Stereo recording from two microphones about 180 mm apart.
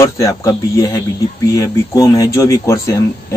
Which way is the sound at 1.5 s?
20° left (ahead or behind).